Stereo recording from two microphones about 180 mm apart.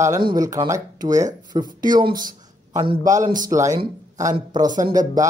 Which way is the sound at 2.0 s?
50° right (ahead or behind).